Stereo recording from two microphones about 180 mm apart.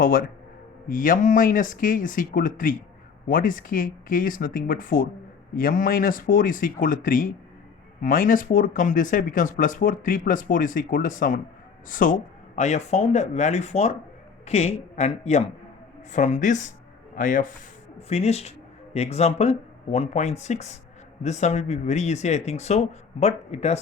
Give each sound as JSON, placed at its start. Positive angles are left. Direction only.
{"t": 0.0, "sound": "speech", "side_deg": 50}
{"t": 18.1, "sound": "speech", "side_deg": 35}